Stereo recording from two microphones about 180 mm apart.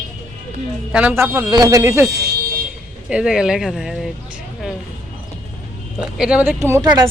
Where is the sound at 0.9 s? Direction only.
10° right (ahead or behind).